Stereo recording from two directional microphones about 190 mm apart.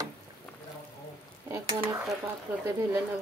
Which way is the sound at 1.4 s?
15° right (ahead or behind).